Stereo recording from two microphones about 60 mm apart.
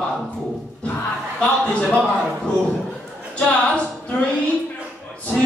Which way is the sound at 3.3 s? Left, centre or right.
Centre.